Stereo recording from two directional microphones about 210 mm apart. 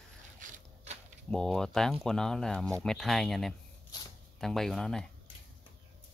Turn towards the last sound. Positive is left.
turn(degrees=0)  # may be behind; listen again after turning